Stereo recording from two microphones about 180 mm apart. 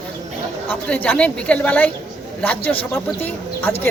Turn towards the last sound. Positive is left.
turn(degrees=10)  # may be behind; listen again after turning